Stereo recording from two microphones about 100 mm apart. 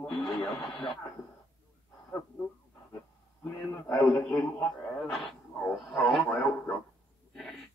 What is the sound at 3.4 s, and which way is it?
Speech, 25° left (ahead or behind).